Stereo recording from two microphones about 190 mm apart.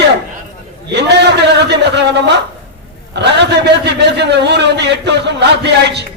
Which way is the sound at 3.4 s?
65° right (ahead or behind).